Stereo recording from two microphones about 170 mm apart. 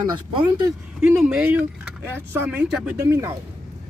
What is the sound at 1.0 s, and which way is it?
Speech, 5° right (ahead or behind).